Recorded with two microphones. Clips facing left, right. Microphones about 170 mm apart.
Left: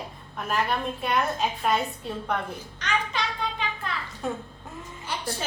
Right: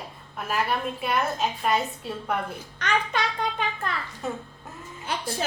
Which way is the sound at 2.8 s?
50° right (ahead or behind).